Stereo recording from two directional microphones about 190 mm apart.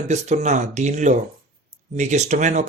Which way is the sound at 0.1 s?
40° right (ahead or behind).